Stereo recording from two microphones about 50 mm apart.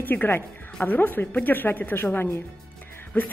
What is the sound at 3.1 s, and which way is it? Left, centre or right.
Speech, left.